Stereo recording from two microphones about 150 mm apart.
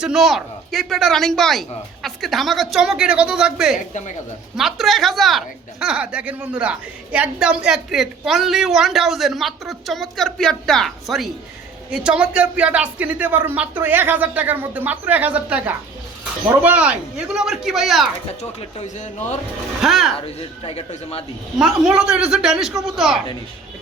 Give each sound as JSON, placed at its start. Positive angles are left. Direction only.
{"t": 0.0, "sound": "speech", "side_deg": -5}
{"t": 18.8, "sound": "speech", "side_deg": 50}
{"t": 19.8, "sound": "speech", "side_deg": 0}
{"t": 20.2, "sound": "speech", "side_deg": 40}
{"t": 21.6, "sound": "speech", "side_deg": -5}